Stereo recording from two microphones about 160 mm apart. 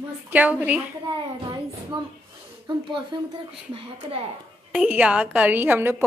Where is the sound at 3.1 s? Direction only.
25° right (ahead or behind).